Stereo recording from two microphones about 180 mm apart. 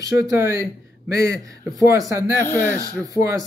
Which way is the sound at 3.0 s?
15° right (ahead or behind).